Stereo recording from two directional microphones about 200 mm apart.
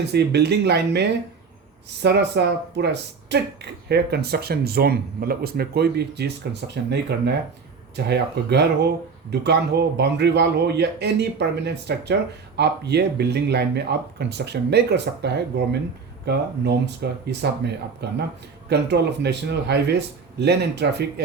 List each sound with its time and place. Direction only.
0.0 s speech: 55° right (ahead or behind)